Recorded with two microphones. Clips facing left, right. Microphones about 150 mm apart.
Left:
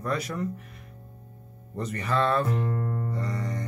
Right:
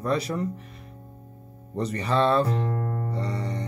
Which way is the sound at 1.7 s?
30° right (ahead or behind).